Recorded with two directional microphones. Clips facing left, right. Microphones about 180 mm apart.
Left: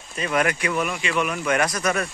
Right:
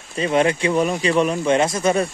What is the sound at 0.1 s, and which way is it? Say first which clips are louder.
Speech: right 5 dB; 25° right (ahead or behind).